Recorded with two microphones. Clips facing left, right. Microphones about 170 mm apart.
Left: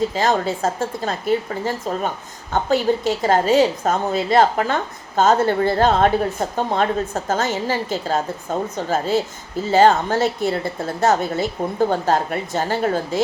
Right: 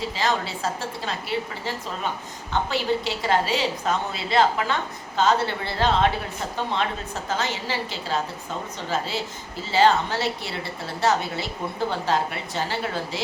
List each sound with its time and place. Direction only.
0.0 s a woman's voice: 45° left (ahead or behind)